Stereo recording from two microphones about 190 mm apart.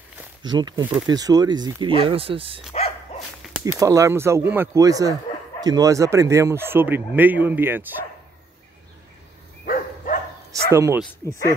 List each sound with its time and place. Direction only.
0.4 s speech: 20° right (ahead or behind)
3.6 s speech: 15° right (ahead or behind)
9.7 s dog: 45° left (ahead or behind)
10.7 s speech: 15° right (ahead or behind)
11.0 s speech: 20° left (ahead or behind)